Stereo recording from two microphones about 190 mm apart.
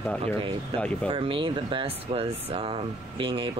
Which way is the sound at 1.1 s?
25° right (ahead or behind).